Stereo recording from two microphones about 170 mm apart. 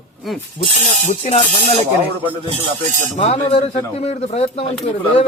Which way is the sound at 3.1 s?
40° left (ahead or behind).